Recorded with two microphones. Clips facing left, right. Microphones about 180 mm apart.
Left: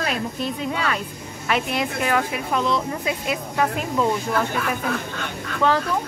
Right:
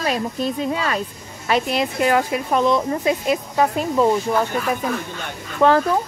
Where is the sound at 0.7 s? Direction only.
35° right (ahead or behind).